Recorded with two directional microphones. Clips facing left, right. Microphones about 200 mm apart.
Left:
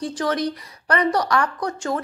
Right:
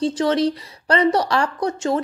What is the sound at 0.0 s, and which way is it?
A woman's voice, 25° right (ahead or behind).